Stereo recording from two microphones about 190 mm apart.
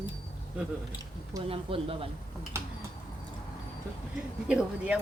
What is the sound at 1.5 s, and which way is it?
Speech, 30° right (ahead or behind).